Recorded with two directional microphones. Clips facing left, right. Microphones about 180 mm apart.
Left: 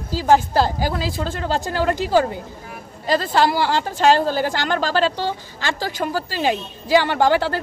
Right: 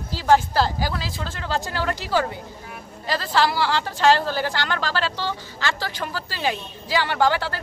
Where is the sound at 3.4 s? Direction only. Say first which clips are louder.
Left 3 dB; 50° left (ahead or behind).